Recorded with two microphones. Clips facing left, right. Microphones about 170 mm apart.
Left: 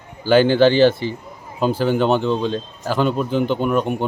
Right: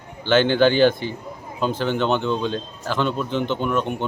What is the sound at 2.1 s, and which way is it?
Speech, 35° left (ahead or behind).